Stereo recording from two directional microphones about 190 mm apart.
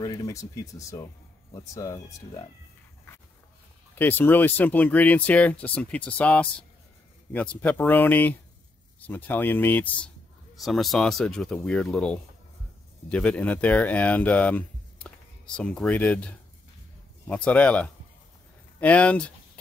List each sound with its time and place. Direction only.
0.0 s speech: 20° left (ahead or behind)
3.9 s speech: 10° left (ahead or behind)